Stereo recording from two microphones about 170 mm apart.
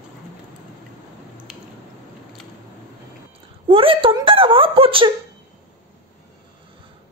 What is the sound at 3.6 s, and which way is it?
Wail, 30° right (ahead or behind).